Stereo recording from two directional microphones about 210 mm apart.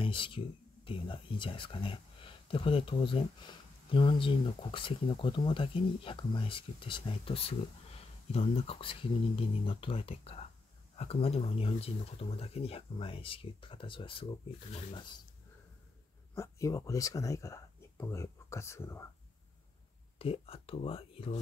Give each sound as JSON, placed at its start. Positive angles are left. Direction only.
{"t": 0.0, "sound": "speech", "side_deg": 25}
{"t": 16.3, "sound": "speech", "side_deg": 15}
{"t": 20.2, "sound": "speech", "side_deg": 25}